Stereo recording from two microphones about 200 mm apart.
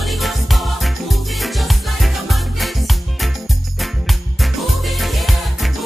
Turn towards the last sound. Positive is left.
turn(degrees=0)  # may be behind; listen again after turning